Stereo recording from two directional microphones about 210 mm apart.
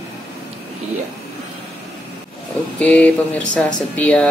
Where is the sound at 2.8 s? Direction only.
5° left (ahead or behind).